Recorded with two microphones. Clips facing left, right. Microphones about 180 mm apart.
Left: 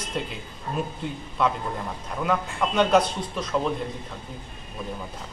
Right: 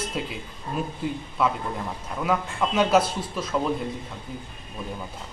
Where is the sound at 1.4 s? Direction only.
5° right (ahead or behind).